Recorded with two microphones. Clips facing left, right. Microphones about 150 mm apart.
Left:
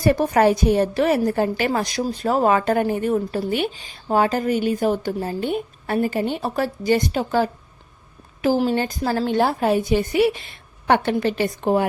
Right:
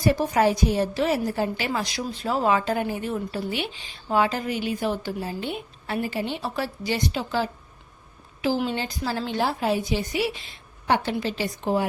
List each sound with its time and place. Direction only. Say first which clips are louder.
0.0 s a woman's voice: left 4 dB; 55° left (ahead or behind)